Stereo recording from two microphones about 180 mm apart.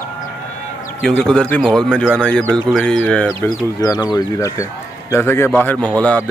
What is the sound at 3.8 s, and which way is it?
A man's voice, 20° left (ahead or behind).